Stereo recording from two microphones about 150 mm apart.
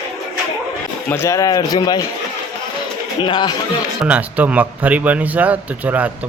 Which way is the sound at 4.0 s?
10° right (ahead or behind).